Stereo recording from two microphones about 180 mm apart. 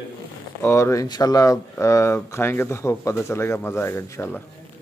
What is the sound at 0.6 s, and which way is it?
Speech, 15° left (ahead or behind).